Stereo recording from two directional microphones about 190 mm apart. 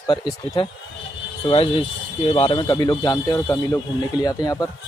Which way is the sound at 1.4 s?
30° left (ahead or behind).